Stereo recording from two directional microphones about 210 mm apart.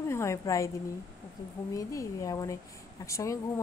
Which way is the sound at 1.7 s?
15° left (ahead or behind).